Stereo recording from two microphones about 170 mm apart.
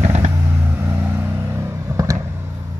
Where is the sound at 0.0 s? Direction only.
40° right (ahead or behind).